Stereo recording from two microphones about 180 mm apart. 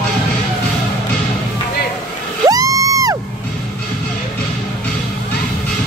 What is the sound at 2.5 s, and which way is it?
Music, 20° right (ahead or behind).